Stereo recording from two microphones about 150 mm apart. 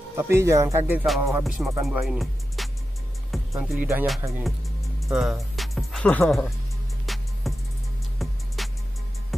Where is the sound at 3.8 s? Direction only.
10° right (ahead or behind).